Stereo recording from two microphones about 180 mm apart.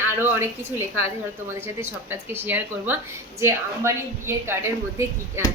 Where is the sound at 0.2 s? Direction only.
15° right (ahead or behind).